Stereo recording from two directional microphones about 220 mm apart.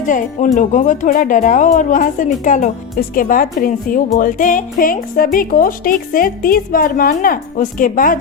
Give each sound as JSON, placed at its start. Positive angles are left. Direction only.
{"t": 0.1, "sound": "speech", "side_deg": 35}